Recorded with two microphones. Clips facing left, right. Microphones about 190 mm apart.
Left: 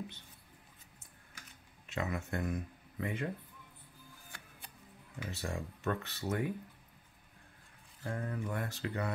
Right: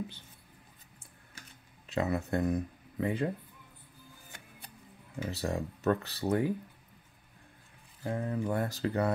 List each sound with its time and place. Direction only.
1.9 s speech: 35° right (ahead or behind)
5.3 s speech: 35° right (ahead or behind)
8.0 s speech: 25° right (ahead or behind)